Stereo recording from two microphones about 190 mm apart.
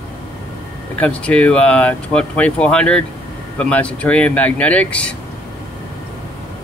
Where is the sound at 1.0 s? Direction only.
5° left (ahead or behind).